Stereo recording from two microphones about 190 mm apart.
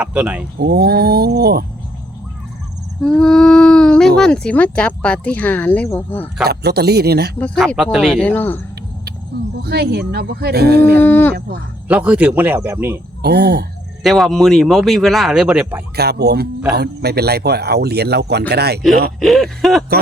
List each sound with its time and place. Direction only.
0.0 s speech: 5° right (ahead or behind)
0.6 s speech: 55° right (ahead or behind)
3.0 s a sound: 5° left (ahead or behind)
4.2 s speech: 5° left (ahead or behind)
6.4 s speech: 55° right (ahead or behind)
7.3 s speech: 10° left (ahead or behind)
9.6 s speech: 60° right (ahead or behind)
11.0 s speech: 10° left (ahead or behind)
11.9 s speech: 5° right (ahead or behind)
13.2 s speech: 55° right (ahead or behind)
14.0 s speech: centre (ahead or behind)
16.0 s speech: 60° right (ahead or behind)
19.2 s speech: centre (ahead or behind)